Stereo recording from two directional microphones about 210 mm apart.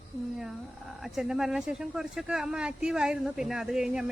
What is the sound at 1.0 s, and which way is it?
Speech, centre (ahead or behind).